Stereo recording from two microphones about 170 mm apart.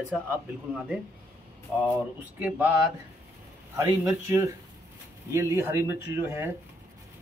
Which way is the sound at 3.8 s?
15° right (ahead or behind).